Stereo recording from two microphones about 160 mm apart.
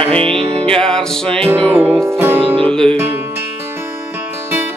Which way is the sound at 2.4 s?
35° right (ahead or behind).